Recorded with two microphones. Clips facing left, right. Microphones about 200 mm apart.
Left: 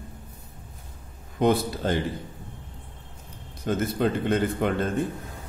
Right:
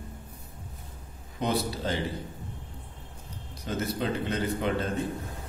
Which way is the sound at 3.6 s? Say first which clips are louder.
Left 6 dB; 55° left (ahead or behind).